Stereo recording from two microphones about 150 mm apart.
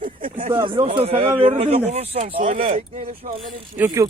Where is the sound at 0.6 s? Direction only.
35° right (ahead or behind).